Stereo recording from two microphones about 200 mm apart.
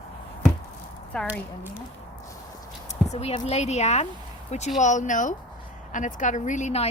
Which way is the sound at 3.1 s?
35° left (ahead or behind).